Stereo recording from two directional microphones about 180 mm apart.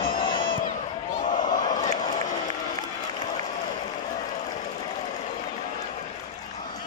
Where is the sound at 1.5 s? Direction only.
20° left (ahead or behind).